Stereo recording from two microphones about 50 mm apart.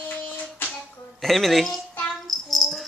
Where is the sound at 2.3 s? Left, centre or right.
Centre.